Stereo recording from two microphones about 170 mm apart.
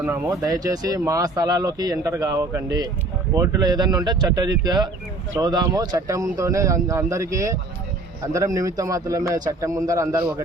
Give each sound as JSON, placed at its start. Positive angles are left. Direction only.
{"t": 0.0, "sound": "speech", "side_deg": -15}